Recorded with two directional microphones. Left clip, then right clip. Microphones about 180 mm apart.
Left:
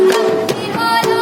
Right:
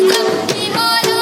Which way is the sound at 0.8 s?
40° left (ahead or behind).